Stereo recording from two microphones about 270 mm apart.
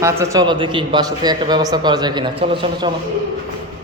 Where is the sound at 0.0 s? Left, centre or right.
Centre.